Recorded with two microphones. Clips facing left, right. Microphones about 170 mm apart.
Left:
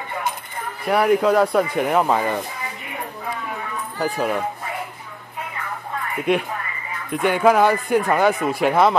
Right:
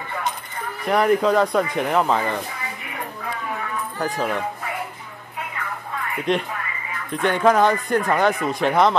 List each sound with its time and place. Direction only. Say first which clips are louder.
0.8 s speech: left 1 dB; 5° left (ahead or behind)
4.0 s speech: left 3 dB; 10° left (ahead or behind)
6.3 s speech: left 2 dB; 10° left (ahead or behind)